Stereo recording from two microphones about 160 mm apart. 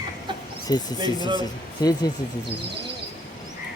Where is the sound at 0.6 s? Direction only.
25° left (ahead or behind).